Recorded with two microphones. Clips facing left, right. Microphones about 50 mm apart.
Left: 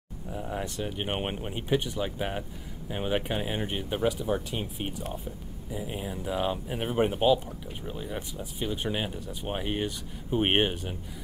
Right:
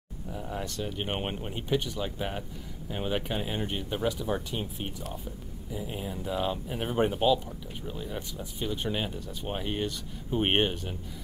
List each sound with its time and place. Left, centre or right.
0.3 s speech: centre